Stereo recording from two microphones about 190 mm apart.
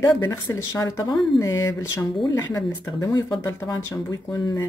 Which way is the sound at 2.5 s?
20° left (ahead or behind).